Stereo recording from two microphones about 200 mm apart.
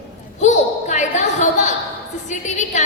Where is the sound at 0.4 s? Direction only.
35° left (ahead or behind).